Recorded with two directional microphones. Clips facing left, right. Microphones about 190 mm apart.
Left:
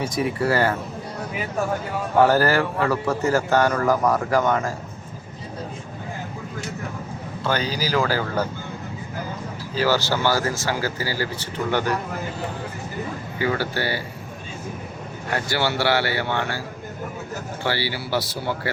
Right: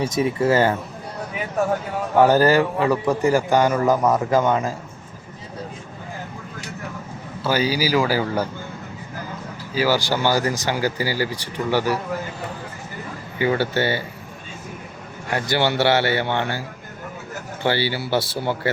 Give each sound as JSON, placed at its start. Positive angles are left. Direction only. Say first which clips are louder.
{"t": 0.1, "sound": "speech", "louder": "right 3 dB", "side_deg": -20}
{"t": 2.1, "sound": "a man's voice", "louder": "right 3 dB", "side_deg": -15}
{"t": 7.4, "sound": "a man's voice", "louder": "right 4 dB", "side_deg": -10}
{"t": 9.7, "sound": "a man's voice", "louder": "right 1 dB", "side_deg": -10}
{"t": 13.4, "sound": "speech", "louder": "right 4 dB", "side_deg": -20}
{"t": 15.4, "sound": "speech", "louder": "right 4 dB", "side_deg": -20}
{"t": 17.7, "sound": "speech", "louder": "right 4 dB", "side_deg": -25}